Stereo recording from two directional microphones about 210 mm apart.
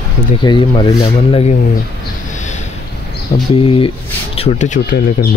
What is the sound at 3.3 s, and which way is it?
Speech, 40° left (ahead or behind).